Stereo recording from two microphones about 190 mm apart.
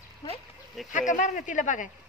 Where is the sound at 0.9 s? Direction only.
40° left (ahead or behind).